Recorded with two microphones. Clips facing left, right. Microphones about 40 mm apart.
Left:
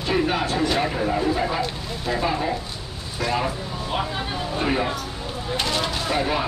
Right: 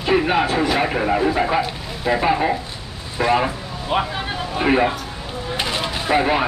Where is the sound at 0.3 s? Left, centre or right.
Right.